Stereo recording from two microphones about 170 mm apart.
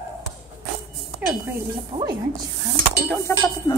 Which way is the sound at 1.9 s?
25° right (ahead or behind).